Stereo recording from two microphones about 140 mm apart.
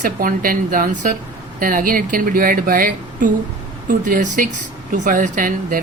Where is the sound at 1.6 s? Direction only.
80° right.